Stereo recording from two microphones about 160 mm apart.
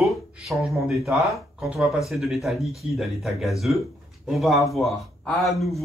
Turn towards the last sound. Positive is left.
turn(degrees=0)  # may be behind; listen again after turning